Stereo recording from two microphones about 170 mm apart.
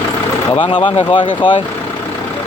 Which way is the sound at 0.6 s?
30° left (ahead or behind).